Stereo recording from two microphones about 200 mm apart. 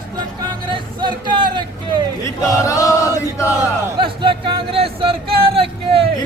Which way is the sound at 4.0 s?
25° right (ahead or behind).